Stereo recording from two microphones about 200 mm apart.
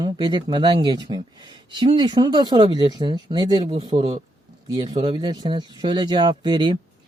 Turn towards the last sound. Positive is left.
turn(degrees=-20)  # may be behind; listen again after turning